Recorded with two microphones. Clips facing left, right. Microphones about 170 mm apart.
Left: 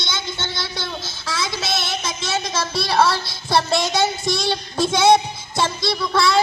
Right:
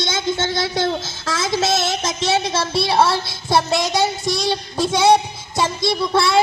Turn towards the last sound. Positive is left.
turn(degrees=-25)  # may be behind; listen again after turning